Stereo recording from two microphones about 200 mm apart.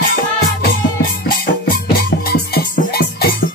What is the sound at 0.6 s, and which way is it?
Music, 50° left (ahead or behind).